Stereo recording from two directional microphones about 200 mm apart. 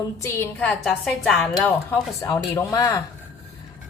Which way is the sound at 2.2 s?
15° left (ahead or behind).